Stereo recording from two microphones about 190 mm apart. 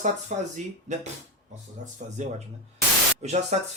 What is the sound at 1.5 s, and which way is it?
Speech, 40° right (ahead or behind).